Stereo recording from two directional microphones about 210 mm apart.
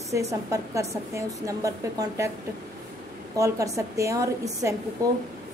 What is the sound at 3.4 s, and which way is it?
A woman's voice, 15° right (ahead or behind).